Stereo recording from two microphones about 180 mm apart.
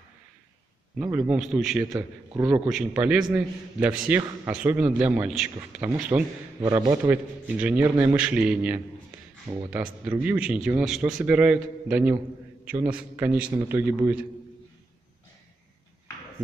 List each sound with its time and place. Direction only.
0.9 s a man's voice: 10° right (ahead or behind)
1.9 s a man's voice: 20° right (ahead or behind)
2.4 s a man's voice: 5° right (ahead or behind)
6.6 s a man's voice: 25° right (ahead or behind)
7.1 s a man's voice: 10° right (ahead or behind)
9.5 s speech: 35° right (ahead or behind)
10.2 s a man's voice: 5° right (ahead or behind)